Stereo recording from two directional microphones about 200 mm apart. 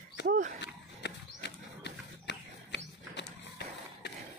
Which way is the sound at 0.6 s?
60° left (ahead or behind).